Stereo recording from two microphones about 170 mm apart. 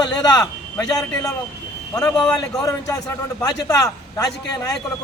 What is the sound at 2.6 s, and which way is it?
A man's voice, 20° left (ahead or behind).